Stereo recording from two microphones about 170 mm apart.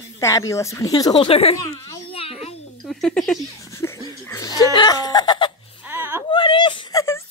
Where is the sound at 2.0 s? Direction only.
35° left (ahead or behind).